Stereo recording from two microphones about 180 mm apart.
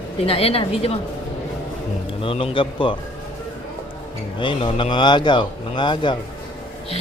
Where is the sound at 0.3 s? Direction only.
35° left (ahead or behind).